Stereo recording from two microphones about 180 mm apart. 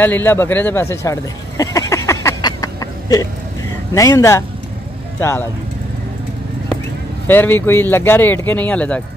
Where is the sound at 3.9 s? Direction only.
15° left (ahead or behind).